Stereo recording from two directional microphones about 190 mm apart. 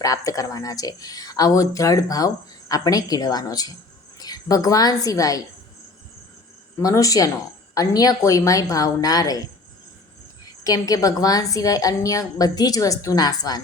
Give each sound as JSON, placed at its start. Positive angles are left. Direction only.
{"t": 0.0, "sound": "a woman's voice", "side_deg": 20}
{"t": 6.7, "sound": "speech", "side_deg": 15}
{"t": 10.6, "sound": "speech", "side_deg": 20}